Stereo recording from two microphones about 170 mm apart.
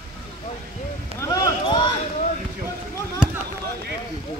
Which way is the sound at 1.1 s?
20° left (ahead or behind).